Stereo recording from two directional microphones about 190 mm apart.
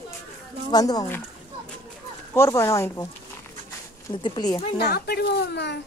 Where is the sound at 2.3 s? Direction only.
15° left (ahead or behind).